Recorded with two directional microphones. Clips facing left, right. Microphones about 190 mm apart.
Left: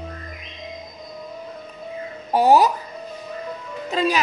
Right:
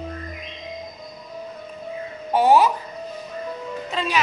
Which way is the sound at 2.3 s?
40° left (ahead or behind).